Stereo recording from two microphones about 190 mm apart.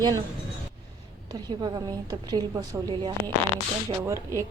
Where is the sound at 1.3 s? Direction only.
20° right (ahead or behind).